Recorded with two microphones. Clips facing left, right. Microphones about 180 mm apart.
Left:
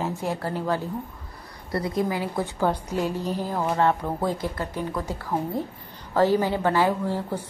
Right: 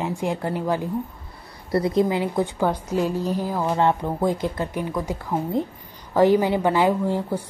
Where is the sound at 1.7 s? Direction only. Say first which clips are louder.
Right 5 dB; 25° right (ahead or behind).